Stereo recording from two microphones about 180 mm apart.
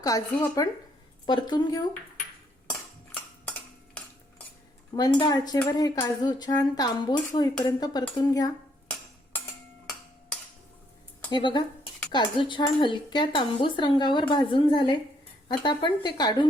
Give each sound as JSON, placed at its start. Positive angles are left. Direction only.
{"t": 0.0, "sound": "speech", "side_deg": 20}
{"t": 4.9, "sound": "speech", "side_deg": 25}
{"t": 11.3, "sound": "speech", "side_deg": 25}